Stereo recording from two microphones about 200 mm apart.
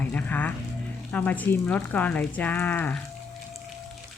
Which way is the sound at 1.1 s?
10° left (ahead or behind).